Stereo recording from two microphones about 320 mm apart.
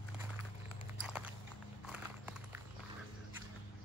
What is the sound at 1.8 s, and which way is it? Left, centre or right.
Horse, centre.